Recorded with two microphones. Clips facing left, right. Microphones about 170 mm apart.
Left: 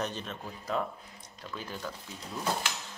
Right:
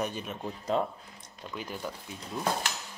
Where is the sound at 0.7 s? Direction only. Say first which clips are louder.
Right 3 dB; 30° right (ahead or behind).